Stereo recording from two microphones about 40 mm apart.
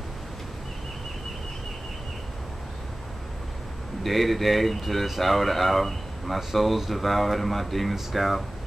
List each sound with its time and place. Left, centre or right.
4.0 s speech: centre